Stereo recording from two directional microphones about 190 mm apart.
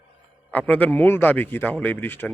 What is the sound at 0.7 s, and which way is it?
Speech, 10° left (ahead or behind).